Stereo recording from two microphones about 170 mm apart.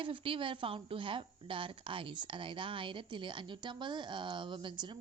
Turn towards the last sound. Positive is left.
turn(degrees=-25)  # may be behind; listen again after turning